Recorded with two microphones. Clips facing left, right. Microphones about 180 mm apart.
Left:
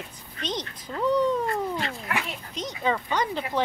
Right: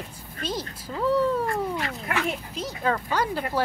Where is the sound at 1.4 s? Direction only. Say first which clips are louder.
Right 1 dB; 25° left (ahead or behind).